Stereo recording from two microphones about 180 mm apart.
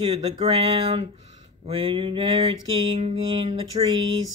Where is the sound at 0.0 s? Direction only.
30° right (ahead or behind).